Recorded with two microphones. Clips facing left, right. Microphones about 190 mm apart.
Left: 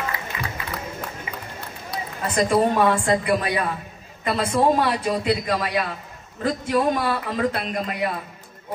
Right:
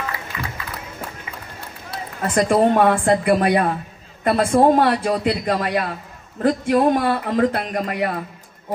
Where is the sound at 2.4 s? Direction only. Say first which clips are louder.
Right 3 dB; 55° right (ahead or behind).